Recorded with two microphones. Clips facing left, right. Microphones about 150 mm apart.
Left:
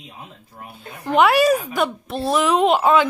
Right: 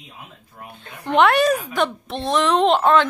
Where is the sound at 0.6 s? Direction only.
5° left (ahead or behind).